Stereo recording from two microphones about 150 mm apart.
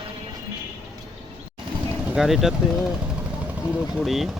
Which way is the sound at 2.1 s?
Centre (ahead or behind).